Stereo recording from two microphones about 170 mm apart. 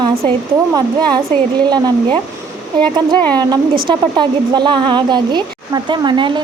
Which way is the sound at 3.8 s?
25° right (ahead or behind).